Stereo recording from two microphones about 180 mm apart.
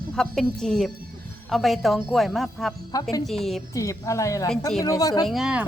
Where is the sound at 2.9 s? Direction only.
20° left (ahead or behind).